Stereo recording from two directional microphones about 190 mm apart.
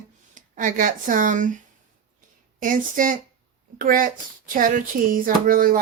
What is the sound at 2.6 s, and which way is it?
Speech, 45° right (ahead or behind).